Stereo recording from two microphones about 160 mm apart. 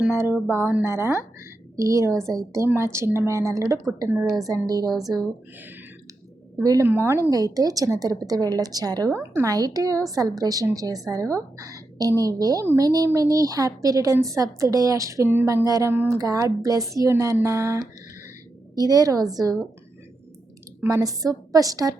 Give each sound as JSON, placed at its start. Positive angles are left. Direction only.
{"t": 0.0, "sound": "a woman's voice", "side_deg": -15}
{"t": 6.6, "sound": "a woman's voice", "side_deg": -20}
{"t": 20.8, "sound": "a woman's voice", "side_deg": -20}